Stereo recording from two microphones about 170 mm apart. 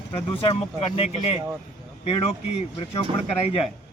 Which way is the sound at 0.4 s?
35° left (ahead or behind).